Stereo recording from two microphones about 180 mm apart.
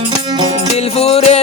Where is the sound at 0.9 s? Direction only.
35° left (ahead or behind).